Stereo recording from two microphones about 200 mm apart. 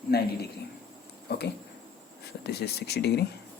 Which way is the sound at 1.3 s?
55° left (ahead or behind).